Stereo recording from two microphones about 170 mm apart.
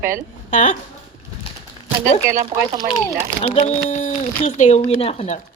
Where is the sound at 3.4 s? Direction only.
40° left (ahead or behind).